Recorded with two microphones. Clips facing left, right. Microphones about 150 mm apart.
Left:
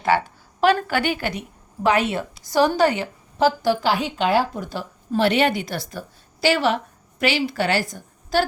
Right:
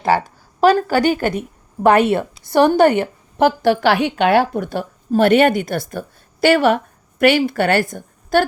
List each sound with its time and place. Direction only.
0.1 s a woman's voice: 40° right (ahead or behind); by 8.4 s 55° right (ahead or behind)